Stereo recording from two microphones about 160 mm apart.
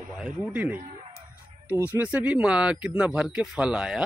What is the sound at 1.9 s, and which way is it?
Speech, 10° right (ahead or behind).